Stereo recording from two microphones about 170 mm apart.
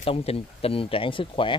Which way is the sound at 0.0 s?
35° left (ahead or behind).